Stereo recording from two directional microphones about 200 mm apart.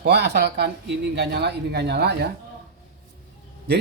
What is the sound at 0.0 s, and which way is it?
Speech, 55° right (ahead or behind).